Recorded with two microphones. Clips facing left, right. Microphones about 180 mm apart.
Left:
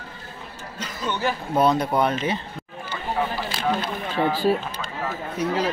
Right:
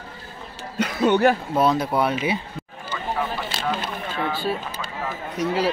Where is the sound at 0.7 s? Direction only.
65° right (ahead or behind).